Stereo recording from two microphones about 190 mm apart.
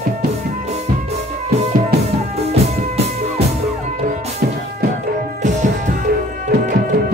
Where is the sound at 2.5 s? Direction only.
35° right (ahead or behind).